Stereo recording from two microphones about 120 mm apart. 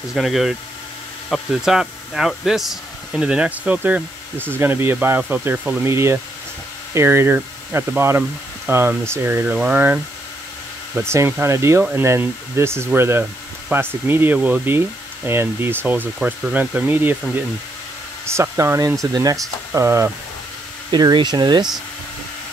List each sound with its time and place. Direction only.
0.1 s speech: centre (ahead or behind)
11.0 s speech: 20° right (ahead or behind)
18.2 s speech: 20° right (ahead or behind)
20.9 s speech: 40° right (ahead or behind)